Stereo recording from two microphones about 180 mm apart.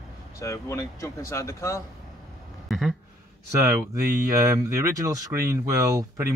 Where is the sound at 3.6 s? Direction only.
15° right (ahead or behind).